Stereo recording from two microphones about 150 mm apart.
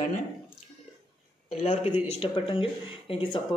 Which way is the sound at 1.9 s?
10° right (ahead or behind).